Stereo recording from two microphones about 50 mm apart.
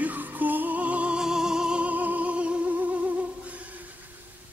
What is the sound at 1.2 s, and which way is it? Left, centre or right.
Music, centre.